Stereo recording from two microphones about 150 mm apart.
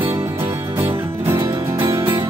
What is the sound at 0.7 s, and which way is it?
Music, 15° right (ahead or behind).